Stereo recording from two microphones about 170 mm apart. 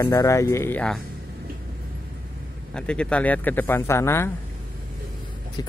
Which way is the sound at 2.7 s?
5° left (ahead or behind).